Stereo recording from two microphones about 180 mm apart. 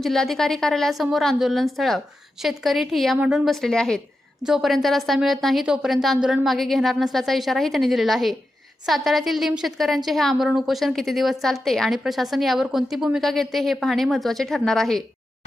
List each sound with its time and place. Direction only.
0.0 s a woman's voice: centre (ahead or behind)